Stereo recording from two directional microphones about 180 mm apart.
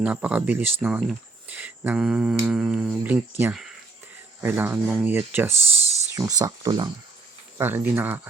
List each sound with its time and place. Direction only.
0.0 s speech: 5° right (ahead or behind); by 6.9 s 25° right (ahead or behind)
7.6 s speech: 10° right (ahead or behind)